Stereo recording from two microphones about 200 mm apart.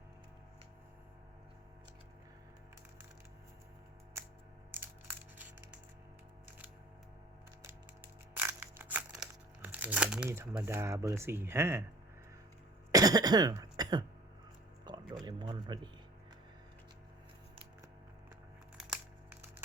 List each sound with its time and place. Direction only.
4.7 s crushing: 10° right (ahead or behind)
7.6 s crushing: 10° right (ahead or behind)
10.2 s speech: 10° right (ahead or behind)
12.9 s cough: 20° right (ahead or behind)
14.8 s music: 20° right (ahead or behind)